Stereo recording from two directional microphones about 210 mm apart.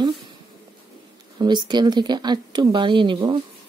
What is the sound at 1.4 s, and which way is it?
Speech, 20° right (ahead or behind).